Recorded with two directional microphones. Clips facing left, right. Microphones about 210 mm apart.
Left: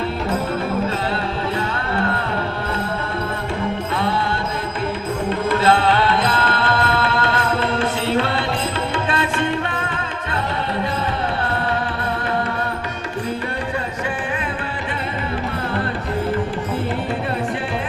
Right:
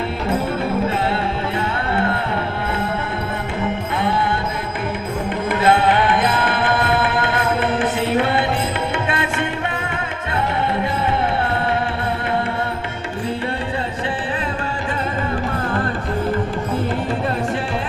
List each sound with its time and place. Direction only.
5.5 s music: 20° right (ahead or behind)